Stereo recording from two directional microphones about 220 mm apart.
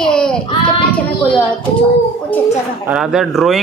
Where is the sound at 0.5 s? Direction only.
20° left (ahead or behind).